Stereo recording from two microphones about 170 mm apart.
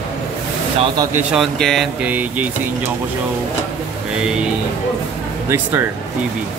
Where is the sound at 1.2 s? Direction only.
5° right (ahead or behind).